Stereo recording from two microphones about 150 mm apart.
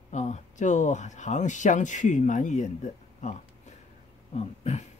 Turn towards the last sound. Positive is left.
turn(degrees=50)  # may be behind; listen again after turning